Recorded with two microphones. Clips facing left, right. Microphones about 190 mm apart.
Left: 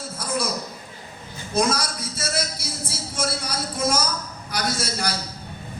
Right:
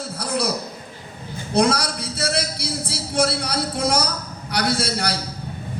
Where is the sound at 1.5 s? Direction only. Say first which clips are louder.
Right 4 dB; 65° right (ahead or behind).